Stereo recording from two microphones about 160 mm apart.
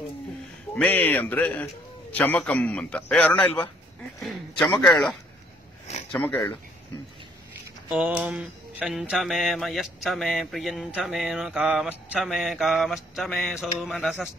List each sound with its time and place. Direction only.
0.7 s a man's voice: 10° left (ahead or behind)
4.2 s mantra: centre (ahead or behind)
6.3 s speech: 30° left (ahead or behind)
7.9 s mantra: 5° right (ahead or behind)